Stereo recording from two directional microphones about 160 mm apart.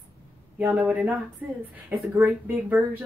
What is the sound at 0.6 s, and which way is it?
Speech, 10° right (ahead or behind).